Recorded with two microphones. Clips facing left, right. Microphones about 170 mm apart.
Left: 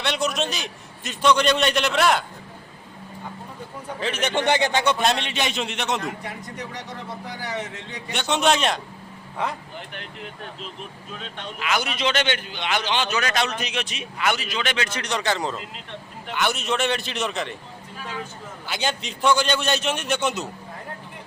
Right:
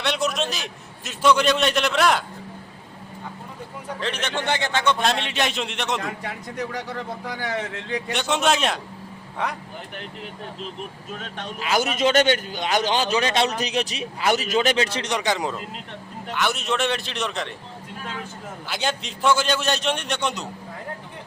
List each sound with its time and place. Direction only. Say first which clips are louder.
0.0 s a man's voice: even; centre (ahead or behind)
4.0 s a man's voice: left 3 dB; 5° left (ahead or behind)
4.3 s a man's voice: left 6 dB; 15° left (ahead or behind); by 6.0 s centre (ahead or behind)
8.1 s a man's voice: left 1 dB; centre (ahead or behind)
11.2 s a man's voice: even; 40° right (ahead or behind)
15.1 s a man's voice: left 1 dB; 15° right (ahead or behind)
16.3 s a man's voice: even; centre (ahead or behind)
18.7 s a man's voice: even; centre (ahead or behind)